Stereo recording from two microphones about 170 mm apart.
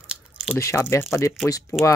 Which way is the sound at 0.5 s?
15° left (ahead or behind).